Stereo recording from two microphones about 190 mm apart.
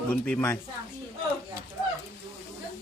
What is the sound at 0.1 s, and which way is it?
Speech, 5° left (ahead or behind).